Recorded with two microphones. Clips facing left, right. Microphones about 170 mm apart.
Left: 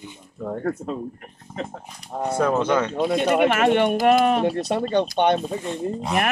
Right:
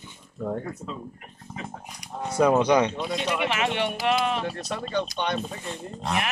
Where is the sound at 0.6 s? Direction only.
55° left (ahead or behind).